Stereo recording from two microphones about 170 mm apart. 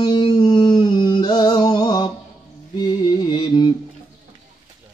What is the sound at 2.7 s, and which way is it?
Music, 25° left (ahead or behind).